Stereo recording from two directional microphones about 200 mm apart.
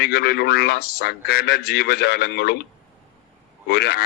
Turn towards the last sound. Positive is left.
turn(degrees=55)  # may be behind; listen again after turning